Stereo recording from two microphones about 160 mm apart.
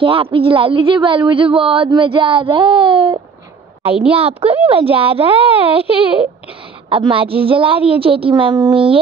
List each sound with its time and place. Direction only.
0.0 s speech: 35° right (ahead or behind)
6.9 s speech: 35° right (ahead or behind)